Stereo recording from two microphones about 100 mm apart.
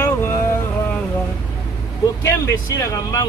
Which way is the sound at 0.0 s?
25° left (ahead or behind).